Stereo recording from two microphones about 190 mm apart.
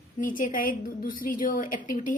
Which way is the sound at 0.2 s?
45° left (ahead or behind).